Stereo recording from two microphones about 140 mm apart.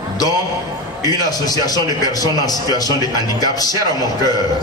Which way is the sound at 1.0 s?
25° left (ahead or behind).